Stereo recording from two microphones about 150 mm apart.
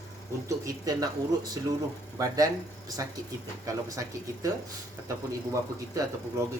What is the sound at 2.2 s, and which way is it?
Speech, 25° right (ahead or behind).